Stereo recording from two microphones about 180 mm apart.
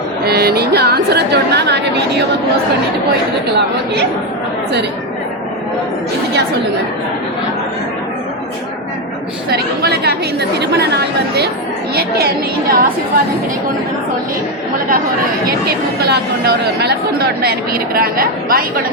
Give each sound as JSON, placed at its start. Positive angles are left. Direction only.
{"t": 0.3, "sound": "a woman's voice", "side_deg": -60}
{"t": 9.5, "sound": "speech", "side_deg": -60}
{"t": 15.4, "sound": "speech", "side_deg": -60}